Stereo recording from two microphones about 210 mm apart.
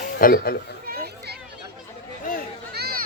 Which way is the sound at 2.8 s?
45° right (ahead or behind).